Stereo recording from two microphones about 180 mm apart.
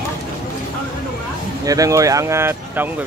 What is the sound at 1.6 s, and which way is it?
Speech, 20° right (ahead or behind).